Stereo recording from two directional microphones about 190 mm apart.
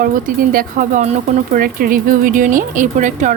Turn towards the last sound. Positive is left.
turn(degrees=-40)  # may be behind; listen again after turning